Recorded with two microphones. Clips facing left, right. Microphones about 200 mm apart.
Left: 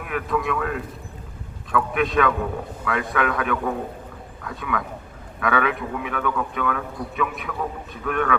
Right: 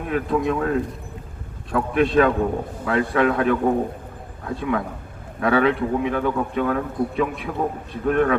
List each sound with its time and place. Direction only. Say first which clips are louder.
0.0 s a man's voice: right 4 dB; 30° right (ahead or behind)